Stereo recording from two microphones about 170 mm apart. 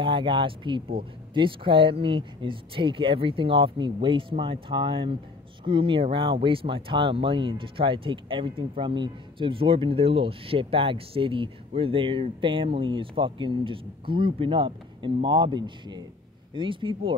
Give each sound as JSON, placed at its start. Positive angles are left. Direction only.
{"t": 0.0, "sound": "speech", "side_deg": -30}